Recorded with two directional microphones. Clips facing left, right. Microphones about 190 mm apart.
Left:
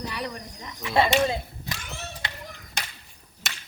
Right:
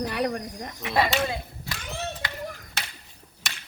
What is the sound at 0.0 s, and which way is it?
Speech, 55° right (ahead or behind).